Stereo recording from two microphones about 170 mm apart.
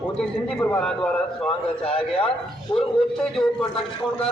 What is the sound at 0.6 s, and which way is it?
Speech, 10° left (ahead or behind).